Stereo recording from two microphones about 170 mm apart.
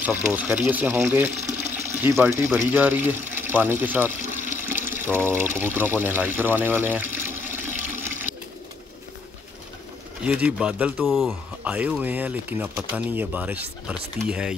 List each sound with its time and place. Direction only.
0.0 s speech: 10° right (ahead or behind)
1.3 s speech: 45° right (ahead or behind)
1.9 s speech: 15° right (ahead or behind)
4.6 s water: 15° right (ahead or behind)
10.2 s speech: 5° right (ahead or behind)
11.7 s speech: 10° right (ahead or behind)